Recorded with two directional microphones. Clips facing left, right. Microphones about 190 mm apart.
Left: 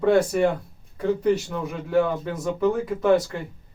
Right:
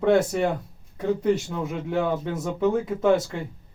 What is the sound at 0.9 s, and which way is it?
A man's voice, 25° right (ahead or behind).